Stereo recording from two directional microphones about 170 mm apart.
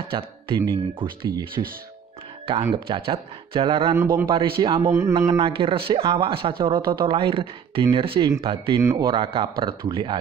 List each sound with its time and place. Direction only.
0.1 s speech: 30° right (ahead or behind)
2.7 s speech: 30° right (ahead or behind)
3.9 s a man's voice: 15° right (ahead or behind)
4.3 s speech: 25° right (ahead or behind)
5.4 s speech: 30° right (ahead or behind)
8.3 s speech: 20° right (ahead or behind)